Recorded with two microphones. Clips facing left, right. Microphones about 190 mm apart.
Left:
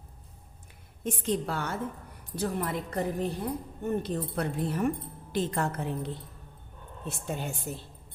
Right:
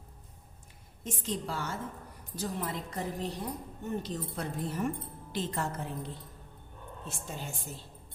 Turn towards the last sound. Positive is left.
turn(degrees=60)  # may be behind; listen again after turning